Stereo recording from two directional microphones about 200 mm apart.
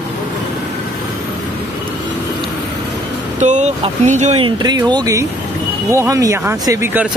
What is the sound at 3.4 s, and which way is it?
Speech, 35° right (ahead or behind).